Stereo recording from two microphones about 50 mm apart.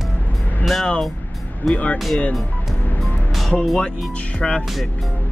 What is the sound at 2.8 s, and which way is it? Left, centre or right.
Vehicle, left.